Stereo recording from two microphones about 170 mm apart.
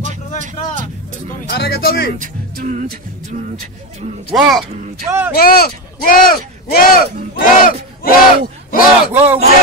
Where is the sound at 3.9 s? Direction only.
45° right (ahead or behind).